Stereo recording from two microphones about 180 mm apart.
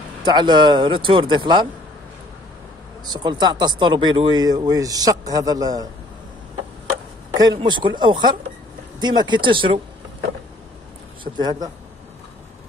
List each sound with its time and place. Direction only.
0.2 s speech: 25° right (ahead or behind)
3.1 s speech: 25° right (ahead or behind)
7.3 s speech: 20° right (ahead or behind)
11.3 s speech: 20° right (ahead or behind)